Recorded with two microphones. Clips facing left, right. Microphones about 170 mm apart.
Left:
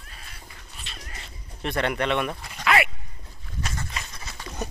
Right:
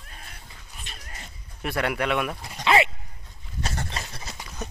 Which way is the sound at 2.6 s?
25° right (ahead or behind).